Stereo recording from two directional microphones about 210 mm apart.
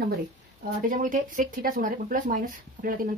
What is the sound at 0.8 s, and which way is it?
Speech, 40° right (ahead or behind).